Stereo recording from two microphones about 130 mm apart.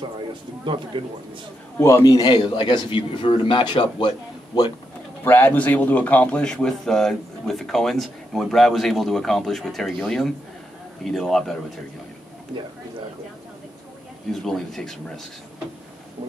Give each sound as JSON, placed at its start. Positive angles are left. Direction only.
{"t": 1.0, "sound": "a man's voice", "side_deg": -45}
{"t": 1.8, "sound": "a man's voice", "side_deg": 25}
{"t": 5.2, "sound": "a man's voice", "side_deg": 15}
{"t": 14.3, "sound": "a man's voice", "side_deg": 0}